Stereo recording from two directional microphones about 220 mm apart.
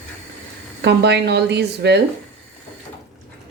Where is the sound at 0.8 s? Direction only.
50° right (ahead or behind).